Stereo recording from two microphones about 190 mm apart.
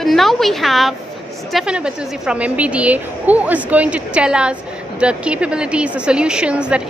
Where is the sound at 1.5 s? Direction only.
5° right (ahead or behind).